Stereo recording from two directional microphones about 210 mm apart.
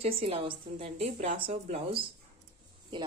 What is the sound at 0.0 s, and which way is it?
Speech, 25° right (ahead or behind).